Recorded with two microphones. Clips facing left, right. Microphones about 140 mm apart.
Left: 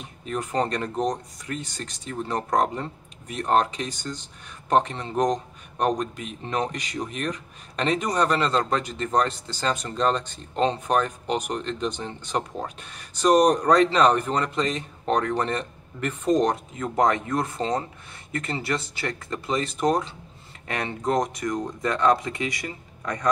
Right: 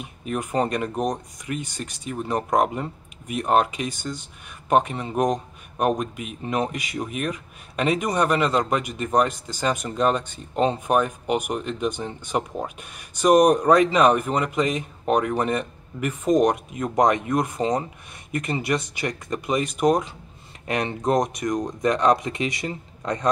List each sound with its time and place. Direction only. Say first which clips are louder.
0.0 s speech: right 2 dB; 10° right (ahead or behind)